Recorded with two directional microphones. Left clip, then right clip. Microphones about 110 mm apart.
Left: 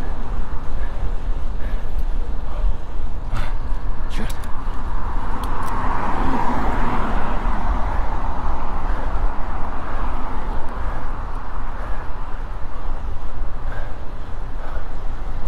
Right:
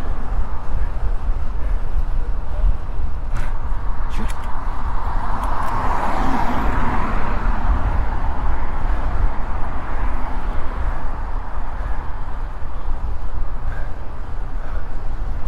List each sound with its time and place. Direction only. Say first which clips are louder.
5.2 s vehicle: right 3 dB; 30° right (ahead or behind)
6.9 s vehicle: even; centre (ahead or behind)